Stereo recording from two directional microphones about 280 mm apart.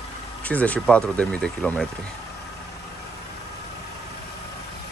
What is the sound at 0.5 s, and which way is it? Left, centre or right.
Speech, centre.